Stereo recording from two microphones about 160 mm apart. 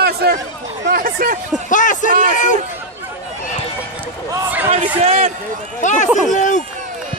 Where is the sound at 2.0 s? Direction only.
60° right (ahead or behind).